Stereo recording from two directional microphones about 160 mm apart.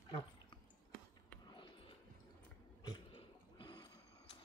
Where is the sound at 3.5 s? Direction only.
30° left (ahead or behind).